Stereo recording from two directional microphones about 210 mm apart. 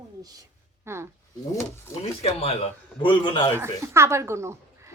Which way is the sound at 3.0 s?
25° left (ahead or behind).